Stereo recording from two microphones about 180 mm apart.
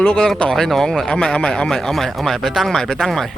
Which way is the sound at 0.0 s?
5° left (ahead or behind).